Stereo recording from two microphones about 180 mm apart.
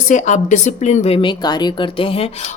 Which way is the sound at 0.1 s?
45° left (ahead or behind).